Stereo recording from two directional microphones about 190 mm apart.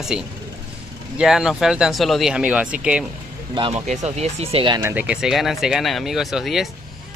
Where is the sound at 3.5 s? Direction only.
25° right (ahead or behind).